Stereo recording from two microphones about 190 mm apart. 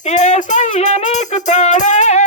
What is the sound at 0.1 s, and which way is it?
Music, 40° left (ahead or behind).